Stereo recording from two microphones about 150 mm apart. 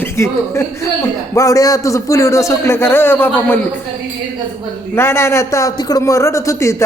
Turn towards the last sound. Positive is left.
turn(degrees=20)  # may be behind; listen again after turning